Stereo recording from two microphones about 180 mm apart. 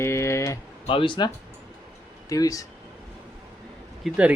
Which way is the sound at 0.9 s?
30° left (ahead or behind).